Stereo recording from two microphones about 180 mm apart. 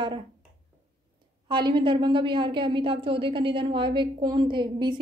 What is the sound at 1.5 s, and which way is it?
A woman's voice, 25° right (ahead or behind).